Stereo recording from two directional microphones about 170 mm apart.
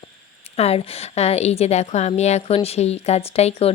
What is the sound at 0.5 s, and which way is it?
Speech, 35° left (ahead or behind).